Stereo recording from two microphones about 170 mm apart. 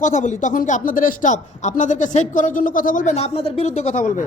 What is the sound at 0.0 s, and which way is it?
A man's voice, 45° left (ahead or behind).